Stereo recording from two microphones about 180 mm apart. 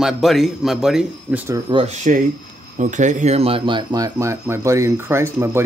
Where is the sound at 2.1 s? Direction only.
45° right (ahead or behind).